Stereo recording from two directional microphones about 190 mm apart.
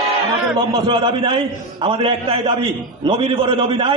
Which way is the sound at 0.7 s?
25° right (ahead or behind).